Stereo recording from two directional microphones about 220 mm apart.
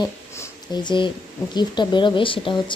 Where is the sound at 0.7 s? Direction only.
20° left (ahead or behind).